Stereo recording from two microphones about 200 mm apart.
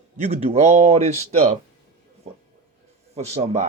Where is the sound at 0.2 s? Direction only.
35° right (ahead or behind).